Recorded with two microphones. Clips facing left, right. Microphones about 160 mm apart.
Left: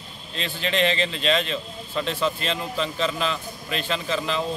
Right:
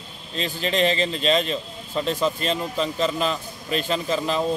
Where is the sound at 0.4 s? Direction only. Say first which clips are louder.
Right 2 dB; 40° right (ahead or behind).